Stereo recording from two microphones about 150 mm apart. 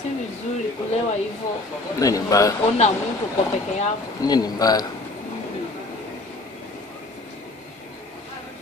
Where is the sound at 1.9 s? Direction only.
20° left (ahead or behind).